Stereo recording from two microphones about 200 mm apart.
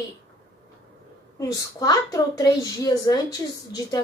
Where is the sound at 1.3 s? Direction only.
15° left (ahead or behind).